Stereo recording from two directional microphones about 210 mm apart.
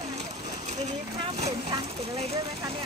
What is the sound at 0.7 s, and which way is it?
Speech, 35° right (ahead or behind).